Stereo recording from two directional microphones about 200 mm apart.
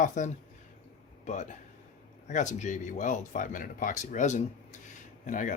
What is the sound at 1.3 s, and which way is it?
Speech, 35° left (ahead or behind).